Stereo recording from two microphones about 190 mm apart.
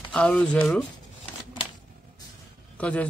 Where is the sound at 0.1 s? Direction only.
5° left (ahead or behind).